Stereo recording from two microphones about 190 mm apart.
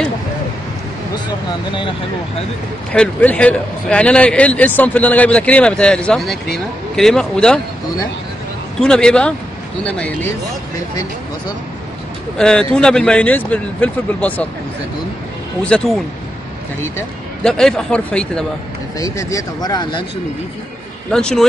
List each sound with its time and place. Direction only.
2.9 s a man's voice: 5° left (ahead or behind)
8.8 s a man's voice: 5° left (ahead or behind)
12.4 s a man's voice: 5° left (ahead or behind)
15.6 s speech: 5° left (ahead or behind)
17.4 s speech: 5° left (ahead or behind)
18.9 s speech: 20° left (ahead or behind)
21.1 s speech: 5° left (ahead or behind)